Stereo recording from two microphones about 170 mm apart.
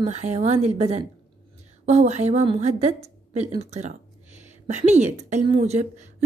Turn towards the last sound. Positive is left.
turn(degrees=-45)  # may be behind; listen again after turning